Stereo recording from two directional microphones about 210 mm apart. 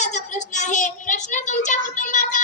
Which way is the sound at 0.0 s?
35° left (ahead or behind).